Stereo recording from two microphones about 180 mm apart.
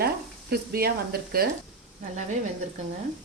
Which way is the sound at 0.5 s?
60° right (ahead or behind).